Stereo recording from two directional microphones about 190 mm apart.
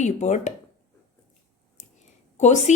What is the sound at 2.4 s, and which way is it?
Speech, 40° left (ahead or behind).